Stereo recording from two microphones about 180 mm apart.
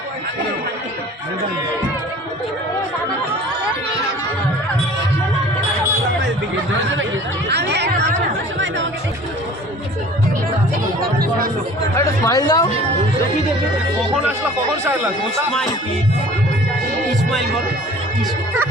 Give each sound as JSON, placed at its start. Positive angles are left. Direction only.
{"t": 7.4, "sound": "speech", "side_deg": -70}
{"t": 8.5, "sound": "speech", "side_deg": -90}
{"t": 11.9, "sound": "speech", "side_deg": 15}
{"t": 14.8, "sound": "speech", "side_deg": -10}